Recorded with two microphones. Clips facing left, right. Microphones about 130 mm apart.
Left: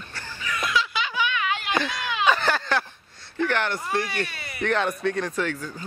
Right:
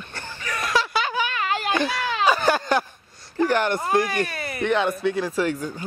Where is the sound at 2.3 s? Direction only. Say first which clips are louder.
Right 3 dB; 10° right (ahead or behind).